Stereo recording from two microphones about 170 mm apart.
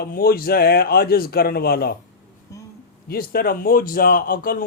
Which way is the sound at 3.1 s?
60° left (ahead or behind).